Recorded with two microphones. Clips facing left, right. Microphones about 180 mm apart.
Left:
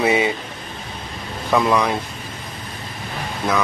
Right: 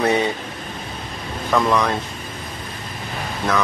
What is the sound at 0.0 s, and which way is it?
Speech, 10° left (ahead or behind).